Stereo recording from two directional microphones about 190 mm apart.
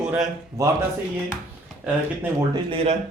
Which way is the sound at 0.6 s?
15° right (ahead or behind).